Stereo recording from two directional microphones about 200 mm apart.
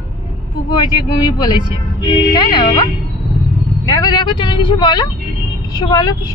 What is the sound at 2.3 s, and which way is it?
Speech, 20° left (ahead or behind).